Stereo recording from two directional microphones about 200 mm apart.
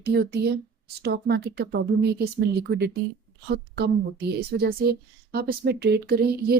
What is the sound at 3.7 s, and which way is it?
A woman's voice, 55° right (ahead or behind).